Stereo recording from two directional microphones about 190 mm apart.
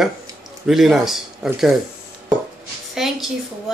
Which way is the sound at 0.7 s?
Centre (ahead or behind).